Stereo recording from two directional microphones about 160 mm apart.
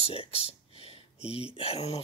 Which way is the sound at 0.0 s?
35° left (ahead or behind).